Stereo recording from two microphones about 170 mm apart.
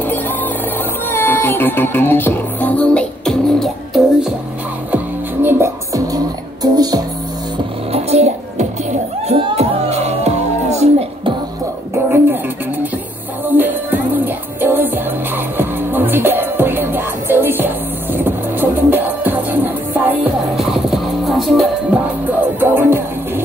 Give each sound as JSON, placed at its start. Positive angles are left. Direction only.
{"t": 1.1, "sound": "music", "side_deg": 10}
{"t": 4.9, "sound": "music", "side_deg": -15}
{"t": 7.9, "sound": "music", "side_deg": -40}
{"t": 11.9, "sound": "a sound", "side_deg": -10}
{"t": 13.5, "sound": "music", "side_deg": -10}
{"t": 22.6, "sound": "music", "side_deg": -15}